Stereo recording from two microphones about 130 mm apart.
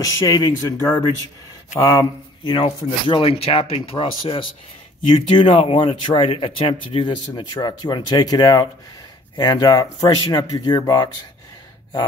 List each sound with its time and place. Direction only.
0.0 s speech: 30° left (ahead or behind)
2.5 s speech: 45° left (ahead or behind)